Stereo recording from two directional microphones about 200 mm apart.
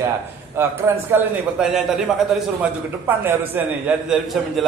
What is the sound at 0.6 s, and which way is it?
A man's voice, 10° right (ahead or behind).